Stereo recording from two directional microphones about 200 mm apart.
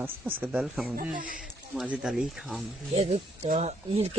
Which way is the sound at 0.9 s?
45° right (ahead or behind).